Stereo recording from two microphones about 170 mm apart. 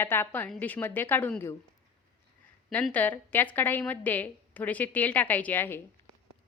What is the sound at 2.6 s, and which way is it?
A woman's voice, 5° left (ahead or behind).